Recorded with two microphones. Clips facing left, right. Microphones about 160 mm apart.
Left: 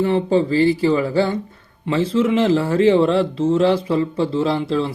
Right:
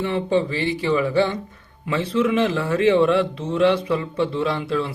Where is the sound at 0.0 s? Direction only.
30° left (ahead or behind).